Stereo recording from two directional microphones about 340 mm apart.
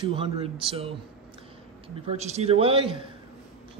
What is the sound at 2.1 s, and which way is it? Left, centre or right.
Speech, centre.